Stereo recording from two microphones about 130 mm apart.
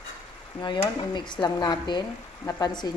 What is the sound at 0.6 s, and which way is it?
A woman's voice, 35° left (ahead or behind).